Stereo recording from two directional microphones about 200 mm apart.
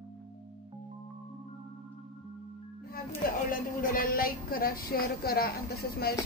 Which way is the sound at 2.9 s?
45° left (ahead or behind).